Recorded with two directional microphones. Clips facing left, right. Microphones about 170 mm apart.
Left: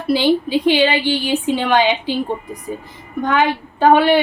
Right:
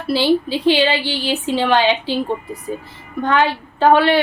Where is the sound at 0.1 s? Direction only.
15° left (ahead or behind).